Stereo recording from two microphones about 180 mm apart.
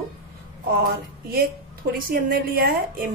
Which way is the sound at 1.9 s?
55° right (ahead or behind).